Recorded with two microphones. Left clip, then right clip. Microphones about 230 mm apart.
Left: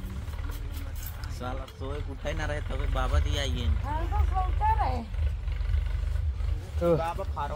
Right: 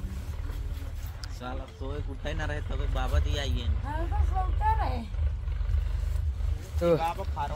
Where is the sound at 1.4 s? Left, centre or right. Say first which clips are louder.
Left 2 dB; centre.